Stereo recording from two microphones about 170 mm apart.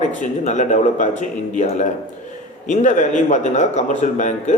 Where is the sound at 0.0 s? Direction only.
45° left (ahead or behind).